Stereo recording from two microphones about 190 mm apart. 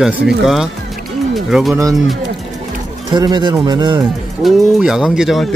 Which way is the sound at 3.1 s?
20° right (ahead or behind).